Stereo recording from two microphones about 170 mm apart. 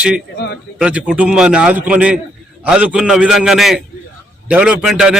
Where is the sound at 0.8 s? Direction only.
5° right (ahead or behind).